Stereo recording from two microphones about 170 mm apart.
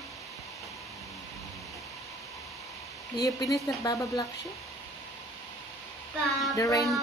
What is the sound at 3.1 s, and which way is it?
Speech, 20° left (ahead or behind).